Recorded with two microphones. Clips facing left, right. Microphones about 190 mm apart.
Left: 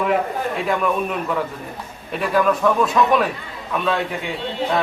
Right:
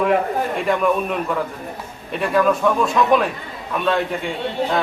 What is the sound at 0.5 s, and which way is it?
Speech, centre (ahead or behind).